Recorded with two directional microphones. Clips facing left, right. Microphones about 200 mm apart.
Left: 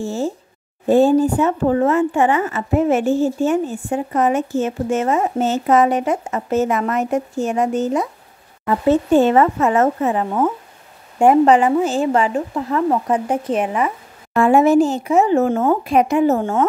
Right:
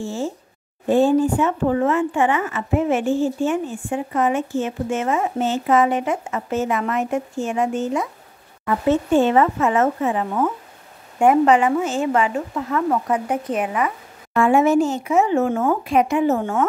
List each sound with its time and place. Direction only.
0.0 s speech: 40° left (ahead or behind)